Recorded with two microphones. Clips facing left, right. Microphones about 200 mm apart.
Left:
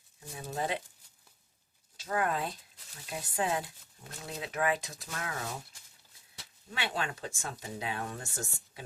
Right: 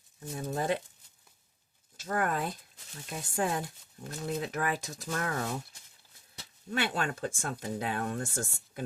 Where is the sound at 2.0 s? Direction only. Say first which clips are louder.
Right 1 dB; 45° right (ahead or behind).